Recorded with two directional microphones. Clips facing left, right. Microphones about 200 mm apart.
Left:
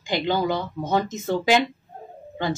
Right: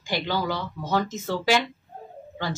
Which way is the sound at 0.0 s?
20° left (ahead or behind).